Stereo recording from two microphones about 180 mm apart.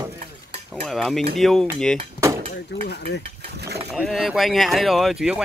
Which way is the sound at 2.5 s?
70° left (ahead or behind).